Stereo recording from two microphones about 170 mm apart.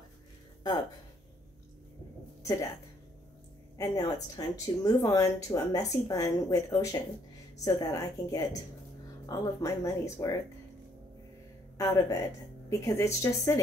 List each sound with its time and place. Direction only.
3.7 s speech: 20° left (ahead or behind)
11.8 s a woman's voice: 20° left (ahead or behind)